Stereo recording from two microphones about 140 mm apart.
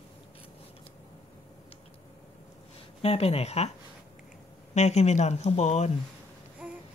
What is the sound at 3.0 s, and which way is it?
Speech, 45° left (ahead or behind).